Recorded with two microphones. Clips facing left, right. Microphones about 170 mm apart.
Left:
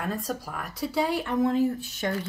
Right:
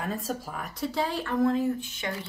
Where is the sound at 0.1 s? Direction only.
Centre (ahead or behind); by 1.5 s 15° left (ahead or behind).